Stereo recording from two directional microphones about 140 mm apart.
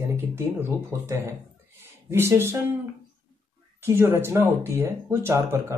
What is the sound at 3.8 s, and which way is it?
Speech, 20° right (ahead or behind).